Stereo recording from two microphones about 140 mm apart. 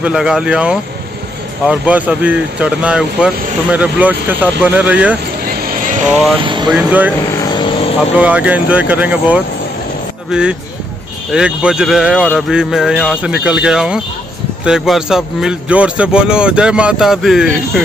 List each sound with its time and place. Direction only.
0.0 s speech: 5° right (ahead or behind)
5.5 s vehicle: 90° right
6.4 s speech: 35° right (ahead or behind)
6.7 s speech: 10° right (ahead or behind)
7.5 s vehicle: 35° left (ahead or behind)
8.2 s speech: 10° right (ahead or behind)